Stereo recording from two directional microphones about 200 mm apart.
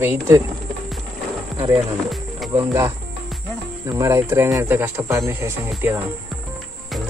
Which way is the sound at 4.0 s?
15° right (ahead or behind).